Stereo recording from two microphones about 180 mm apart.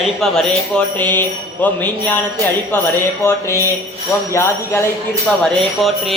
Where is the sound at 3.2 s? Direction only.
15° left (ahead or behind).